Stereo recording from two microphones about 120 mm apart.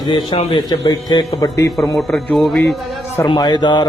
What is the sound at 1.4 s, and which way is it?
Speech, 30° left (ahead or behind).